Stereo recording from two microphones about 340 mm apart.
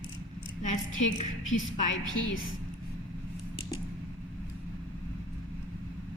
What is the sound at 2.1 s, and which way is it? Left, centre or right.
Speech, left.